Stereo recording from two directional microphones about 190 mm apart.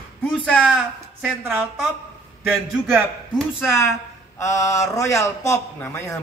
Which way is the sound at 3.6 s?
15° left (ahead or behind).